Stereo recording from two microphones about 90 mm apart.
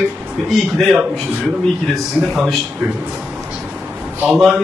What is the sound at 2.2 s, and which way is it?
Speech, 5° right (ahead or behind).